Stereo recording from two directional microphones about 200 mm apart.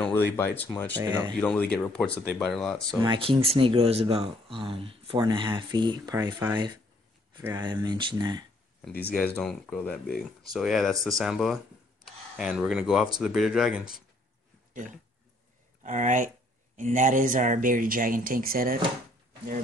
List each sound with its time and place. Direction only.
0.0 s speech: 10° left (ahead or behind)
1.0 s speech: 15° right (ahead or behind)
1.4 s speech: 5° left (ahead or behind)
3.0 s speech: 25° right (ahead or behind)
9.1 s speech: 5° left (ahead or behind)
15.8 s speech: 40° right (ahead or behind)